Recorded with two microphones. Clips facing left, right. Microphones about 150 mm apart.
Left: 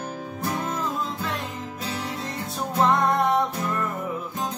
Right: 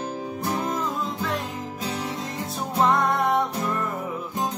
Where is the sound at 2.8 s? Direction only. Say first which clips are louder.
Left 1 dB; centre (ahead or behind).